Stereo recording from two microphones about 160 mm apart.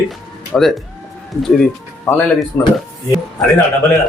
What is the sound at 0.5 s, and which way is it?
Speech, 5° left (ahead or behind).